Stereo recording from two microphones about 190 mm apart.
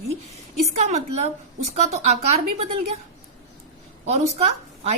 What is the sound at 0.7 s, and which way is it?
A woman's voice, 35° right (ahead or behind).